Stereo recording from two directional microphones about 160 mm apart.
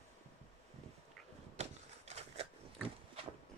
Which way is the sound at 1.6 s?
40° right (ahead or behind).